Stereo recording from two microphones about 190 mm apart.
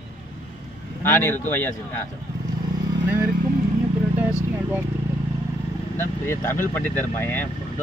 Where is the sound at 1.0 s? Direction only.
10° left (ahead or behind).